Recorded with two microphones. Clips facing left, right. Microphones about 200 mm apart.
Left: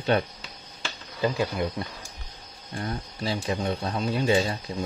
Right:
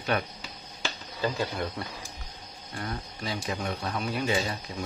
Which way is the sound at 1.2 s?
15° left (ahead or behind).